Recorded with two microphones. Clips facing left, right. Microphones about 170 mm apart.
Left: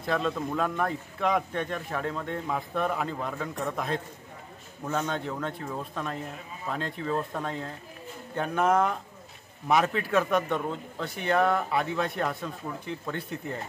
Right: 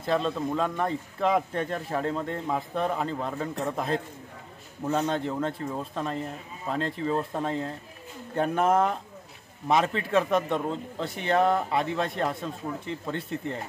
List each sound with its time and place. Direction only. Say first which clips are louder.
0.0 s a man's voice: right 2 dB; 25° right (ahead or behind)